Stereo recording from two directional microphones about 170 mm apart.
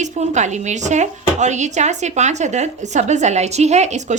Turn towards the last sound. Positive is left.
turn(degrees=-45)  # may be behind; listen again after turning